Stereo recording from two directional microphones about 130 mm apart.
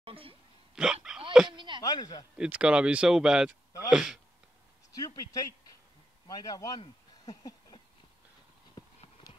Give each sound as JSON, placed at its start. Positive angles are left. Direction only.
{"t": 0.0, "sound": "hiccup", "side_deg": -45}
{"t": 0.8, "sound": "a sound", "side_deg": -5}
{"t": 1.4, "sound": "speech", "side_deg": -5}
{"t": 1.8, "sound": "speech", "side_deg": 30}
{"t": 2.3, "sound": "speech", "side_deg": -10}
{"t": 4.9, "sound": "a man's voice", "side_deg": 30}
{"t": 7.2, "sound": "a sound", "side_deg": 30}
{"t": 8.8, "sound": "clip-clop", "side_deg": 30}